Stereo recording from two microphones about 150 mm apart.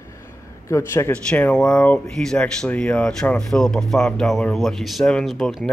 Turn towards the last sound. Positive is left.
turn(degrees=0)  # may be behind; listen again after turning